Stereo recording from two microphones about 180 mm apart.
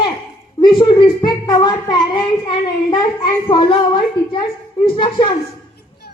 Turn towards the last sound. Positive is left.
turn(degrees=25)  # may be behind; listen again after turning